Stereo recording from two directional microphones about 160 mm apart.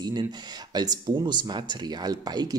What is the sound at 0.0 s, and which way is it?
Speech, 25° right (ahead or behind).